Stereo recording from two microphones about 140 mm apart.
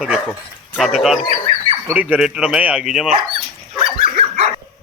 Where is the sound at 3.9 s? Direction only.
50° right (ahead or behind).